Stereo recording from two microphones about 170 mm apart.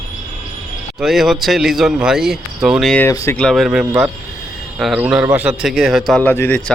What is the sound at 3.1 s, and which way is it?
Speech, 15° left (ahead or behind).